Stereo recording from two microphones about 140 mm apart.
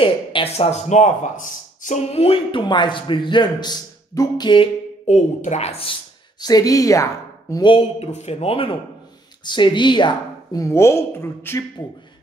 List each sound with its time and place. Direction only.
0.0 s speech: 40° left (ahead or behind)
5.0 s speech: 55° left (ahead or behind)
6.4 s a woman's voice: 25° left (ahead or behind)
7.6 s a woman's voice: 40° left (ahead or behind); by 11.6 s 15° left (ahead or behind)